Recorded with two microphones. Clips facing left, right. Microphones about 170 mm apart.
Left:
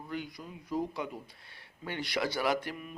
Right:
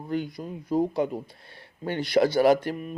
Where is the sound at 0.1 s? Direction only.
35° right (ahead or behind).